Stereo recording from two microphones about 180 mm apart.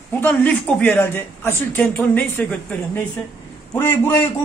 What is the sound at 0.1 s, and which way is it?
Speech, 10° left (ahead or behind).